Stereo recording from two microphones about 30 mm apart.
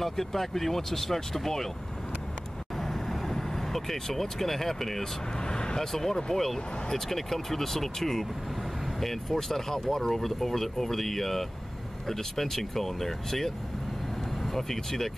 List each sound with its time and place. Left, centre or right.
0.0 s speech: centre
2.8 s vehicle: centre
5.4 s vehicle: left
5.8 s speech: centre
14.5 s speech: centre